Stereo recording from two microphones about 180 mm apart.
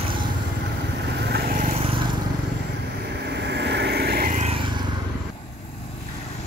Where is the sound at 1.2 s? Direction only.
60° right (ahead or behind).